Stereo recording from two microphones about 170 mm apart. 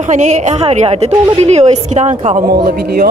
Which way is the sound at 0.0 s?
45° right (ahead or behind).